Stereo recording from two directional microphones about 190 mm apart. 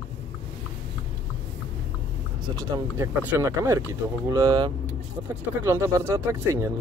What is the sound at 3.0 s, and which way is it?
Speech, 10° right (ahead or behind).